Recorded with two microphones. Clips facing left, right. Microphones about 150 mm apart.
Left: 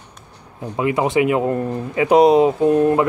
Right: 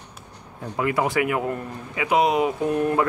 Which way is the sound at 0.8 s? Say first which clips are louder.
Left 5 dB; 20° left (ahead or behind).